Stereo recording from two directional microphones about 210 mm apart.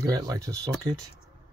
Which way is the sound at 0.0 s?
15° right (ahead or behind).